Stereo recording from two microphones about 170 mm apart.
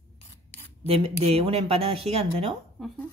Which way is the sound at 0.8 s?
35° right (ahead or behind).